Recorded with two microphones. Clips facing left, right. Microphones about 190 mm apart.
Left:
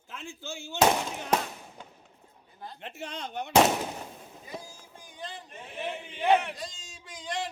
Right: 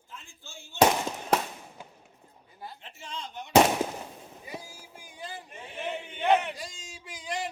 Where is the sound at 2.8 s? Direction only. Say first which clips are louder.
Left 6 dB; 65° left (ahead or behind).